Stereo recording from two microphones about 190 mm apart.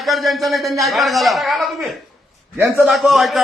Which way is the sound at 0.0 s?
Centre (ahead or behind).